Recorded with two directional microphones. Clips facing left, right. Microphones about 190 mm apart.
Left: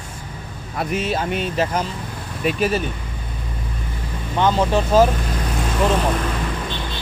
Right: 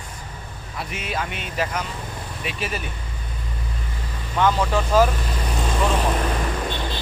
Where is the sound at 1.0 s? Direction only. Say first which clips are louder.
Left 6 dB; 30° left (ahead or behind).